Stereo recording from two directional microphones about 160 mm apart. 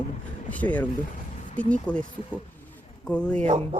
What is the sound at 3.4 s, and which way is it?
Music, 45° right (ahead or behind).